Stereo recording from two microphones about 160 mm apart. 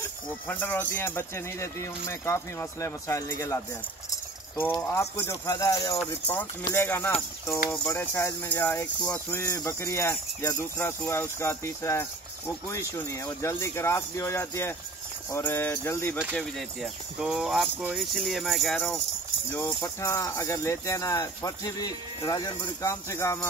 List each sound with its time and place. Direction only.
0.5 s speech: 10° left (ahead or behind)
4.9 s speech: 15° left (ahead or behind)
16.3 s speech: centre (ahead or behind)
19.5 s speech: 15° left (ahead or behind)